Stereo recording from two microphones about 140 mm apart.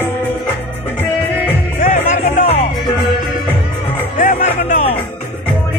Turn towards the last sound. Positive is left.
turn(degrees=55)  # may be behind; listen again after turning